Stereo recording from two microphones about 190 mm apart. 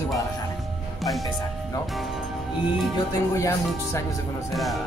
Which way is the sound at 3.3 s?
15° left (ahead or behind).